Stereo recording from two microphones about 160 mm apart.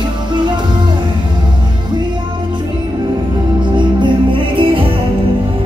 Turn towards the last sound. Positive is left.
turn(degrees=-30)  # may be behind; listen again after turning